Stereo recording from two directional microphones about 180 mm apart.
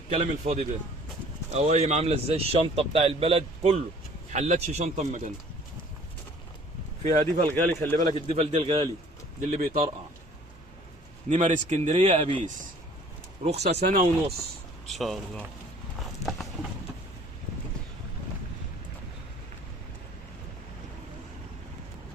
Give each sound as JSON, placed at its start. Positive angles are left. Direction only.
{"t": 0.1, "sound": "a man's voice", "side_deg": -40}
{"t": 7.0, "sound": "a man's voice", "side_deg": -40}
{"t": 7.5, "sound": "speech", "side_deg": 15}
{"t": 8.4, "sound": "a man's voice", "side_deg": -30}
{"t": 9.5, "sound": "a man's voice", "side_deg": -40}
{"t": 11.3, "sound": "a man's voice", "side_deg": -40}
{"t": 13.6, "sound": "speech", "side_deg": -65}
{"t": 13.9, "sound": "a man's voice", "side_deg": -40}
{"t": 14.8, "sound": "speech", "side_deg": 0}
{"t": 16.0, "sound": "clip-clop", "side_deg": 0}